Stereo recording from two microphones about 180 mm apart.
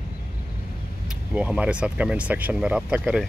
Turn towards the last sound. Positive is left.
turn(degrees=-5)  # may be behind; listen again after turning